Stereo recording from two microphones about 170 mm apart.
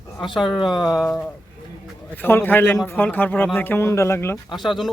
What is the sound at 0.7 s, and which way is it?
Speech, 25° left (ahead or behind).